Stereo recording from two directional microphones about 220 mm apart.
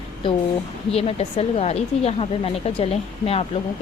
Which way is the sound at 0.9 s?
25° left (ahead or behind).